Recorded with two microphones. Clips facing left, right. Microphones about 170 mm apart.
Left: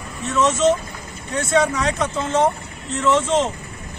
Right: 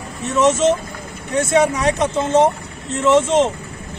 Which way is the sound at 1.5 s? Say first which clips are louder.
Right 2 dB; 25° right (ahead or behind).